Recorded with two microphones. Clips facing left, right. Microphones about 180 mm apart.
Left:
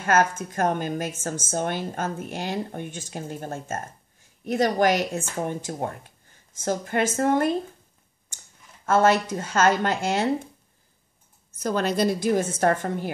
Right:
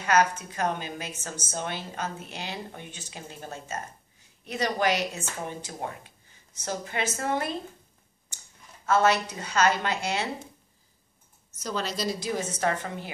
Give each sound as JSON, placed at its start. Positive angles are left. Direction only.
{"t": 0.0, "sound": "a woman's voice", "side_deg": 50}
{"t": 8.8, "sound": "a woman's voice", "side_deg": 50}
{"t": 11.6, "sound": "a woman's voice", "side_deg": 55}